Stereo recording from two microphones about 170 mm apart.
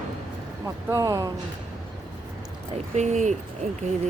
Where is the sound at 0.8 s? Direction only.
20° right (ahead or behind).